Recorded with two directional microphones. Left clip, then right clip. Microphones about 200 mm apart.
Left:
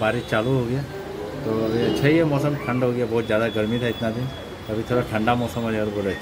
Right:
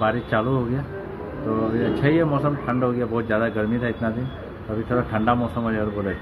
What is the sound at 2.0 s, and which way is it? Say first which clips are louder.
A man's voice: even; 15° left (ahead or behind).